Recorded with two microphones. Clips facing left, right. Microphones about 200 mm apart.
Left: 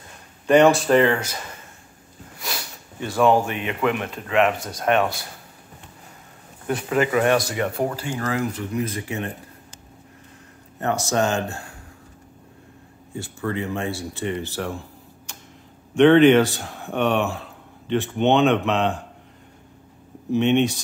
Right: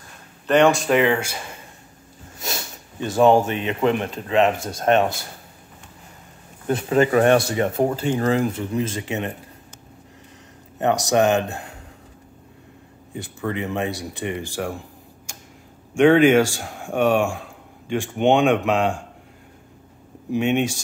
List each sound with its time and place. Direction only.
0.5 s speech: 5° left (ahead or behind)
2.3 s speech: 25° right (ahead or behind)
6.7 s speech: 30° right (ahead or behind)
10.8 s speech: 20° right (ahead or behind)
13.1 s speech: 20° right (ahead or behind)
20.2 s speech: 10° right (ahead or behind)